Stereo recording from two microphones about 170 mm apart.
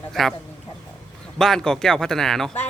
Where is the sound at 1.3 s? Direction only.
5° left (ahead or behind).